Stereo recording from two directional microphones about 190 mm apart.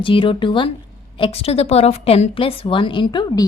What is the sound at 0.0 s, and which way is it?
A woman's voice, 25° left (ahead or behind).